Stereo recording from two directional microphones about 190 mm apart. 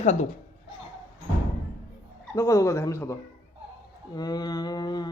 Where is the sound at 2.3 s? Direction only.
15° left (ahead or behind).